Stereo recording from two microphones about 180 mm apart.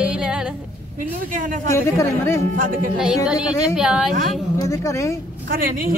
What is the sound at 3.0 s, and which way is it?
Speech, 5° right (ahead or behind).